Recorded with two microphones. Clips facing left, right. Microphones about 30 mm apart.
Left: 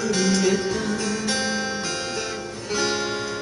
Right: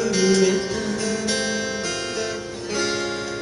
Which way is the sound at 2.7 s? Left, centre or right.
Centre.